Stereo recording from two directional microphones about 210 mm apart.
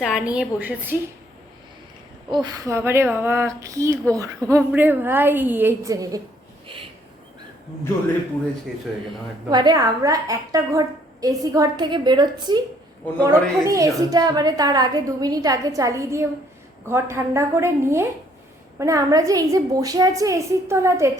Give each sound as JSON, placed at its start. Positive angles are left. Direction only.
{"t": 0.0, "sound": "a woman's voice", "side_deg": -5}
{"t": 2.3, "sound": "a woman's voice", "side_deg": -20}
{"t": 9.5, "sound": "a woman's voice", "side_deg": -20}